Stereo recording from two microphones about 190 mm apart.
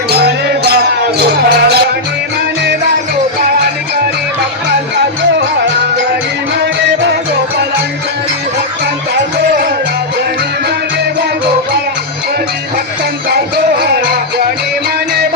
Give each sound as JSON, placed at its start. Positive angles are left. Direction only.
{"t": 0.1, "sound": "music", "side_deg": -60}
{"t": 13.8, "sound": "music", "side_deg": -55}